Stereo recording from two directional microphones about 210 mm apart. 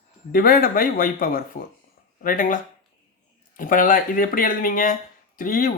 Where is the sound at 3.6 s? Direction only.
40° left (ahead or behind).